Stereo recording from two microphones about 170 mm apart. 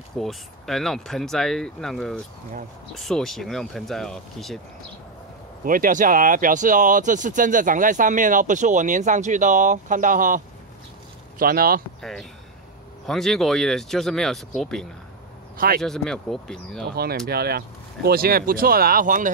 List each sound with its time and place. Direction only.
0.2 s speech: centre (ahead or behind)
5.7 s speech: 55° right (ahead or behind)
12.0 s speech: centre (ahead or behind)
15.5 s speech: 60° right (ahead or behind)
15.8 s speech: centre (ahead or behind)
16.9 s speech: 65° right (ahead or behind)